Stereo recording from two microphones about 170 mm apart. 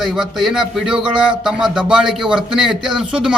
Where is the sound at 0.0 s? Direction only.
Centre (ahead or behind).